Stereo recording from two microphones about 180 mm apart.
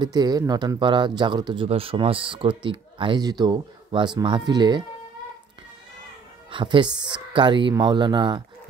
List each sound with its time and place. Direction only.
0.0 s speech: 20° right (ahead or behind)
6.5 s speech: 25° right (ahead or behind)